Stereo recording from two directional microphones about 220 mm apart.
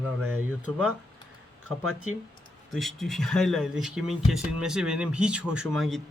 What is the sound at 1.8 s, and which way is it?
Speech, 80° right.